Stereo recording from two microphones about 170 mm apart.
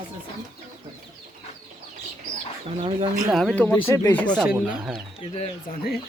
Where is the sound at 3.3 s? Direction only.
5° left (ahead or behind).